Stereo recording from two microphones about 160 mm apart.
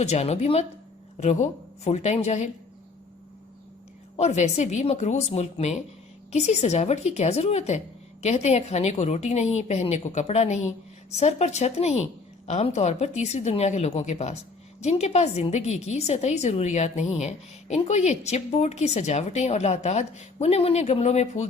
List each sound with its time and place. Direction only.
0.0 s a woman's voice: 40° left (ahead or behind)
4.2 s a woman's voice: 45° left (ahead or behind)